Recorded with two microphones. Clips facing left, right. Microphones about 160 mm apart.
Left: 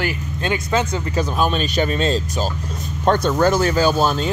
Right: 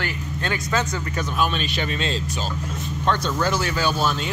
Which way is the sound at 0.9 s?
35° left (ahead or behind).